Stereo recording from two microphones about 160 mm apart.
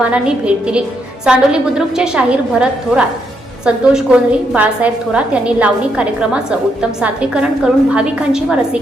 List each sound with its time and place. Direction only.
0.0 s a woman's voice: 5° right (ahead or behind)